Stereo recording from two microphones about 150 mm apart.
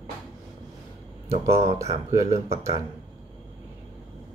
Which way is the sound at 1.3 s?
45° right (ahead or behind).